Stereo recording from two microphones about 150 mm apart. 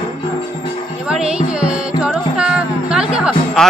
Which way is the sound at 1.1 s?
5° right (ahead or behind).